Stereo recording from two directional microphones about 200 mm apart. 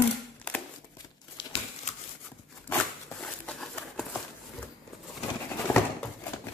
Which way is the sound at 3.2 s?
5° left (ahead or behind).